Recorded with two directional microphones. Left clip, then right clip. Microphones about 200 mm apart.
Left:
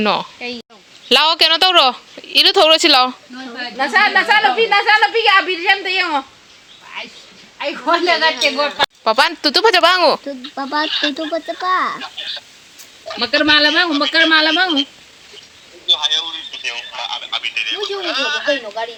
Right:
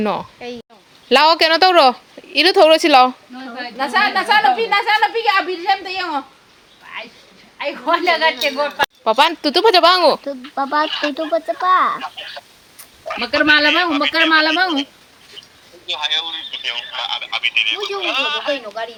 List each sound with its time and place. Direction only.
0.0 s speech: 5° right (ahead or behind)
0.3 s speech: 50° left (ahead or behind)
1.0 s speech: 5° right (ahead or behind)
3.6 s a woman's voice: 45° left (ahead or behind)
7.6 s a woman's voice: 50° left (ahead or behind)
9.0 s speech: centre (ahead or behind)
10.8 s speech: 5° right (ahead or behind)
11.1 s speech: 5° left (ahead or behind)
11.9 s speech: 5° right (ahead or behind)
13.4 s speech: 15° left (ahead or behind)
15.9 s speech: 15° right (ahead or behind)
17.8 s speech: 5° right (ahead or behind)